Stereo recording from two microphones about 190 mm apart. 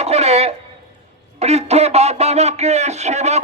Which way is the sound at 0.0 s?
35° right (ahead or behind).